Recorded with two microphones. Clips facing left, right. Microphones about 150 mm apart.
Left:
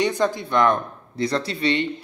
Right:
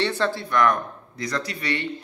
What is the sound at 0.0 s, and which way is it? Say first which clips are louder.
Speech: left 3 dB; 15° left (ahead or behind).